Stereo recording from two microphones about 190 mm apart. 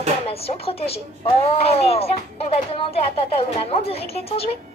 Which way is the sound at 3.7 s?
30° left (ahead or behind).